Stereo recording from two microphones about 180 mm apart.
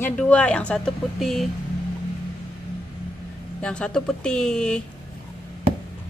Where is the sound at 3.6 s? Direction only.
5° left (ahead or behind).